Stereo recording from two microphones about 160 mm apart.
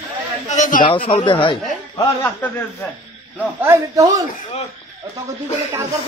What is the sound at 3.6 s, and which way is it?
Speech, 15° right (ahead or behind).